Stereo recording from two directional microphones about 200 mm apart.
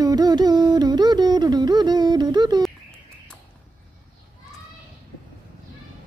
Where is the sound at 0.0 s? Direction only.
20° right (ahead or behind).